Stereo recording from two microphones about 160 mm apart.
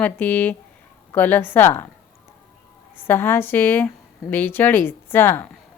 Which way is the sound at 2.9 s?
15° left (ahead or behind).